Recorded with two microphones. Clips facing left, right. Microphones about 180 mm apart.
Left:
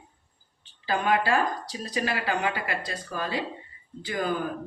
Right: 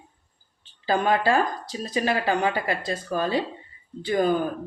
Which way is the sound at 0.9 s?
30° right (ahead or behind).